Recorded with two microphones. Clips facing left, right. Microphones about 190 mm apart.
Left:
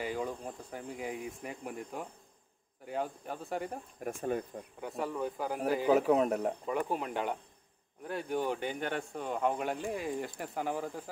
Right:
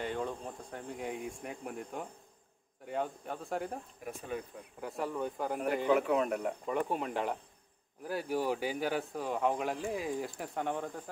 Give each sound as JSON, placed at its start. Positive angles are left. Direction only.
{"t": 0.0, "sound": "speech", "side_deg": 5}
{"t": 4.0, "sound": "speech", "side_deg": 50}
{"t": 4.7, "sound": "speech", "side_deg": 0}
{"t": 5.9, "sound": "speech", "side_deg": 35}
{"t": 6.6, "sound": "speech", "side_deg": 0}